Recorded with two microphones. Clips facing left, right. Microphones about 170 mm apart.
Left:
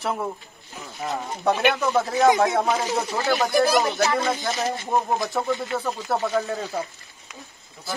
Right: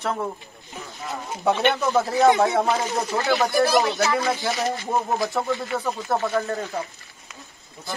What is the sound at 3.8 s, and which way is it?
Speech, 20° left (ahead or behind).